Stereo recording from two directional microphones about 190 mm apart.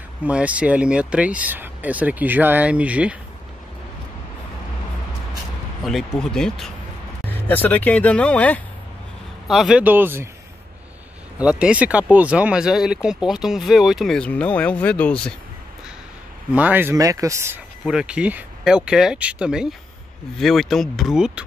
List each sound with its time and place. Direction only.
0.2 s speech: 5° right (ahead or behind)
5.9 s speech: centre (ahead or behind)
11.3 s speech: 5° right (ahead or behind)
16.5 s speech: 10° right (ahead or behind)
17.8 s speech: 5° right (ahead or behind)